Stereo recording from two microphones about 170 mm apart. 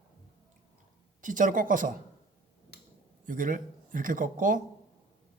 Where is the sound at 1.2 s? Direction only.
50° right (ahead or behind).